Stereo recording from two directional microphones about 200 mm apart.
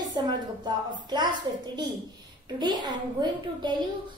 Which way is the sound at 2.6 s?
20° right (ahead or behind).